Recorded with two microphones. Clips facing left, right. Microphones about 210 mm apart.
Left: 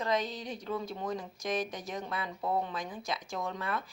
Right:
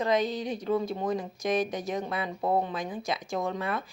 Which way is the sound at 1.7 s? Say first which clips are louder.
Right 7 dB; 60° right (ahead or behind).